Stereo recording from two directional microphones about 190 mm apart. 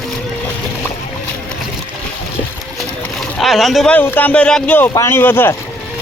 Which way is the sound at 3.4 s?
Centre (ahead or behind).